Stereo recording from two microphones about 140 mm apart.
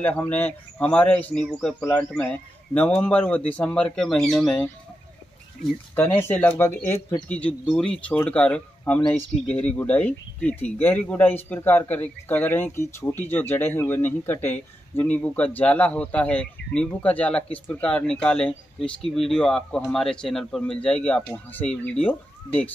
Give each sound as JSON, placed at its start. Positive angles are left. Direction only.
{"t": 0.0, "sound": "speech", "side_deg": 10}